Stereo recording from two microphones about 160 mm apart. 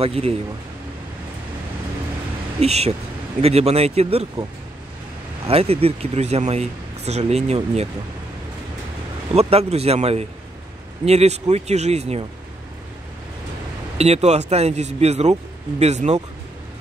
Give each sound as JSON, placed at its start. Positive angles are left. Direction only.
{"t": 0.0, "sound": "speech", "side_deg": -40}
{"t": 2.6, "sound": "speech", "side_deg": -40}
{"t": 5.5, "sound": "speech", "side_deg": -40}
{"t": 9.3, "sound": "speech", "side_deg": -40}
{"t": 13.9, "sound": "speech", "side_deg": -40}